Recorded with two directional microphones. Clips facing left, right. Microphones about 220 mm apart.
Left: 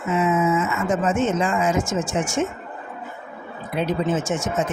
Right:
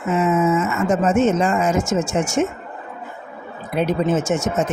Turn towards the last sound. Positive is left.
turn(degrees=-70)  # may be behind; listen again after turning